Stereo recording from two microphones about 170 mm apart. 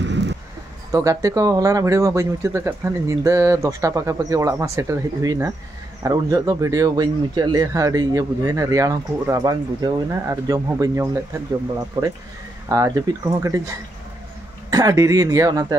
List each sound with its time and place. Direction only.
0.0 s a sound: 90° right
0.9 s speech: 20° right (ahead or behind)
12.6 s speech: 20° right (ahead or behind)
14.7 s speech: 20° right (ahead or behind)